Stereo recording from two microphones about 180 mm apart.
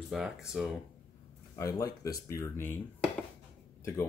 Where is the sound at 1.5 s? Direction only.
20° left (ahead or behind).